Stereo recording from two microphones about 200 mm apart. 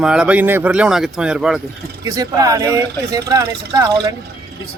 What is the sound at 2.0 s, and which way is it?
Speech, 15° right (ahead or behind).